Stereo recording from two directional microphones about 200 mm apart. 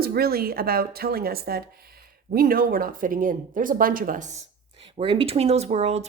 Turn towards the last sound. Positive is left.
turn(degrees=-30)  # may be behind; listen again after turning